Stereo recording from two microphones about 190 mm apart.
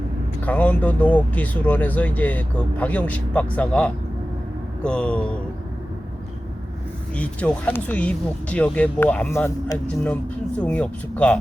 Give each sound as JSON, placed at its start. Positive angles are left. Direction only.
{"t": 0.4, "sound": "speech", "side_deg": 10}
{"t": 4.8, "sound": "a sound", "side_deg": 5}
{"t": 7.2, "sound": "speech", "side_deg": 5}